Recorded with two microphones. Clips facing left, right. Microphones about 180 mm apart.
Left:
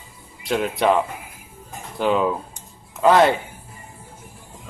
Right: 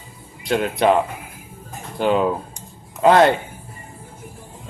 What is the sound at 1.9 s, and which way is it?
Speech, centre (ahead or behind).